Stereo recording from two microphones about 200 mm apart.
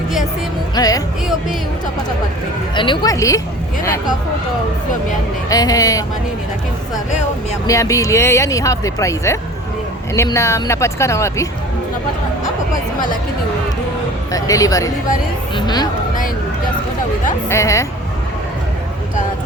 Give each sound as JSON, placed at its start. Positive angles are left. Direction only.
{"t": 0.8, "sound": "speech", "side_deg": 20}
{"t": 2.7, "sound": "speech", "side_deg": 25}
{"t": 5.5, "sound": "speech", "side_deg": 20}
{"t": 7.7, "sound": "speech", "side_deg": 15}
{"t": 14.3, "sound": "speech", "side_deg": 15}
{"t": 17.5, "sound": "speech", "side_deg": 15}